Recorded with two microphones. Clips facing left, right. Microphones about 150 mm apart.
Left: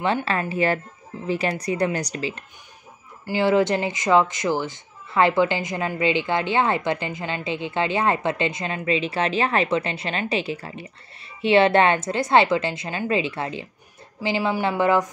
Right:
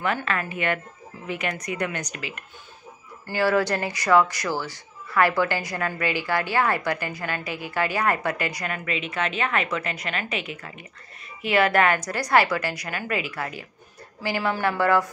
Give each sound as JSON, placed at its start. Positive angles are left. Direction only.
{"t": 0.0, "sound": "speech", "side_deg": 30}